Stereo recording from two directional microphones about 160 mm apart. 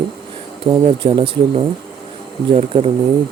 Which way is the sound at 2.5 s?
35° right (ahead or behind).